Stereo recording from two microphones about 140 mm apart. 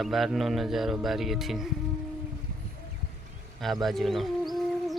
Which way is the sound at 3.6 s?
Centre (ahead or behind).